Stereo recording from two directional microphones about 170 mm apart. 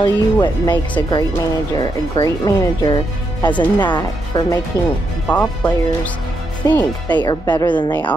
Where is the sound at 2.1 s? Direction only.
20° left (ahead or behind).